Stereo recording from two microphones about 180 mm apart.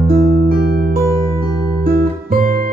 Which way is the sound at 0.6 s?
55° right (ahead or behind).